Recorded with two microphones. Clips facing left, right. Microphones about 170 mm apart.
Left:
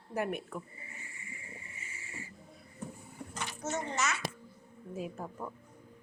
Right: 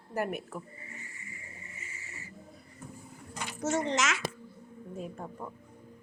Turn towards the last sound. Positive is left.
turn(degrees=0)  # may be behind; listen again after turning